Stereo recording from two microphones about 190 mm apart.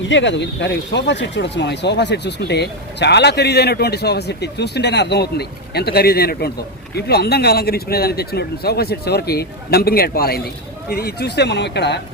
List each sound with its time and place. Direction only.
0.1 s speech: 75° left (ahead or behind)